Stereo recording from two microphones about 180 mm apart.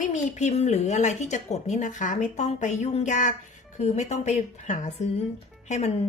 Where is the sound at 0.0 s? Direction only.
45° left (ahead or behind).